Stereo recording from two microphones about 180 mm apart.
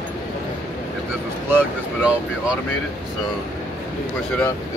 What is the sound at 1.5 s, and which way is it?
Speech, 10° right (ahead or behind).